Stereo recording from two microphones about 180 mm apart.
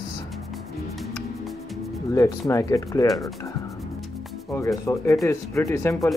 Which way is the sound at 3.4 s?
20° left (ahead or behind).